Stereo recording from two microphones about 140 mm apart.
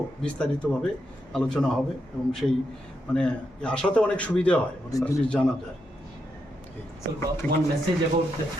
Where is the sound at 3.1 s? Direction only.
5° left (ahead or behind).